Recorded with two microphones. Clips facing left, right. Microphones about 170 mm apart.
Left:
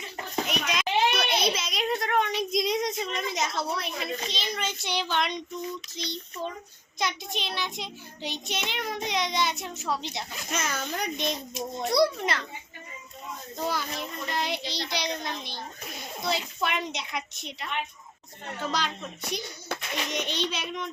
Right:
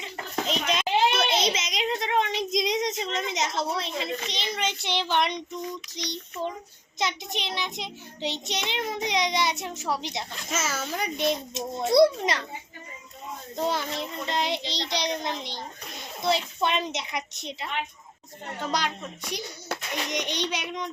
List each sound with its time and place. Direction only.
0.0 s a sound: 25° right (ahead or behind)
4.3 s child singing: 20° right (ahead or behind)
6.0 s a child's voice: 15° right (ahead or behind)
7.0 s child singing: 20° right (ahead or behind)
10.3 s a child's voice: 5° right (ahead or behind)
11.5 s child singing: 25° right (ahead or behind)
13.6 s child singing: 25° right (ahead or behind)
19.3 s a child's voice: 15° right (ahead or behind)